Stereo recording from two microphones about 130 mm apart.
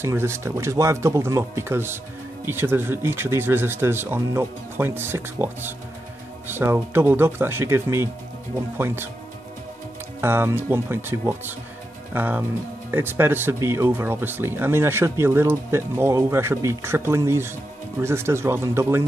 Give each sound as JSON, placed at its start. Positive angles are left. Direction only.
{"t": 0.0, "sound": "speech", "side_deg": -20}
{"t": 10.2, "sound": "speech", "side_deg": -20}